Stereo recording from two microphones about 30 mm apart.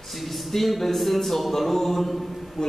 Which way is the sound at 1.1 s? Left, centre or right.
Centre.